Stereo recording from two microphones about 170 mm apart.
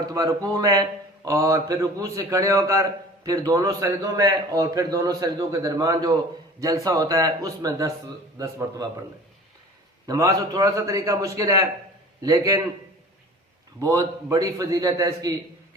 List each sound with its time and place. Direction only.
0.0 s a man's voice: 20° right (ahead or behind)
10.1 s a man's voice: 20° right (ahead or behind)
13.7 s a man's voice: 20° right (ahead or behind)